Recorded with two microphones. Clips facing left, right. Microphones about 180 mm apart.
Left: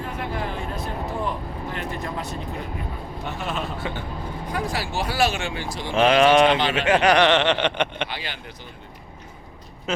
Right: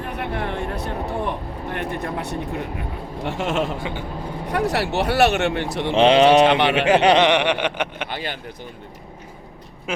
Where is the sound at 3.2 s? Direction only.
90° right.